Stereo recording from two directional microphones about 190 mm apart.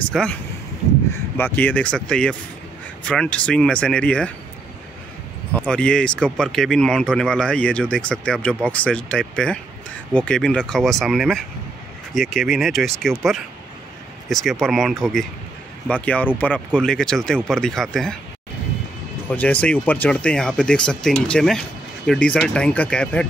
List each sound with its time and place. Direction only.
0.1 s speech: 5° left (ahead or behind)
5.5 s speech: 5° left (ahead or behind)
14.3 s speech: centre (ahead or behind)
19.2 s speech: 10° left (ahead or behind)